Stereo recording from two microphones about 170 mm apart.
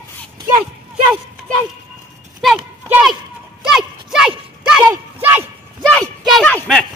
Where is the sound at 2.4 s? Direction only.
5° right (ahead or behind).